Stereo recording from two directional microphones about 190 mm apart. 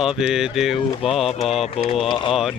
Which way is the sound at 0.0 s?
5° right (ahead or behind).